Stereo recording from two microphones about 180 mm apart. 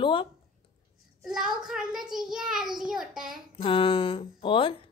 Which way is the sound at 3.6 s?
30° left (ahead or behind).